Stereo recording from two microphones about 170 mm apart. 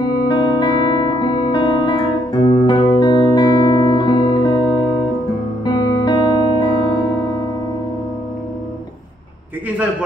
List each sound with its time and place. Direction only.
0.3 s music: 25° left (ahead or behind)